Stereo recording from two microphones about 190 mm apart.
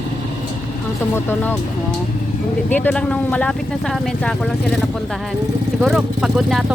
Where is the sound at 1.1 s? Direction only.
10° left (ahead or behind).